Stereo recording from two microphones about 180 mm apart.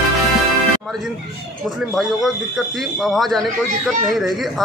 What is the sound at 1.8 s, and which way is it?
Speech, centre (ahead or behind).